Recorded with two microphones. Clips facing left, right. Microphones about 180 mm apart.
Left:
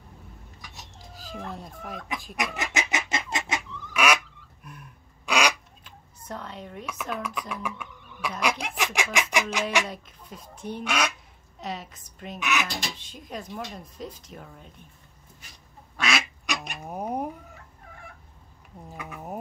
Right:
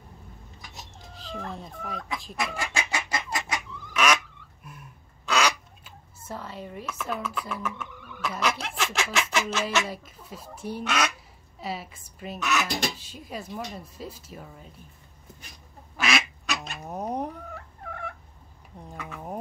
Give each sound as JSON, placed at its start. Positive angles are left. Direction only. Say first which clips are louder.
{"t": 0.9, "sound": "speech", "louder": "right 1 dB", "side_deg": 0}
{"t": 2.3, "sound": "chicken", "louder": "left 1 dB", "side_deg": 20}
{"t": 3.9, "sound": "a sound", "louder": "even", "side_deg": 10}
{"t": 5.2, "sound": "bird", "louder": "even", "side_deg": 15}
{"t": 5.9, "sound": "a sound", "louder": "even", "side_deg": -5}
{"t": 7.2, "sound": "chicken", "louder": "even", "side_deg": 15}
{"t": 9.8, "sound": "speech", "louder": "right 1 dB", "side_deg": -5}
{"t": 10.8, "sound": "chicken", "louder": "even", "side_deg": 10}
{"t": 11.6, "sound": "speech", "louder": "right 1 dB", "side_deg": -5}
{"t": 16.0, "sound": "duck", "louder": "right 1 dB", "side_deg": 0}
{"t": 16.4, "sound": "cat", "louder": "even", "side_deg": 15}
{"t": 18.9, "sound": "a sound", "louder": "even", "side_deg": 10}